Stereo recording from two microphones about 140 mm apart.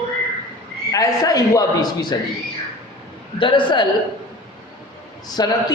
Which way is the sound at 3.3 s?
35° left (ahead or behind).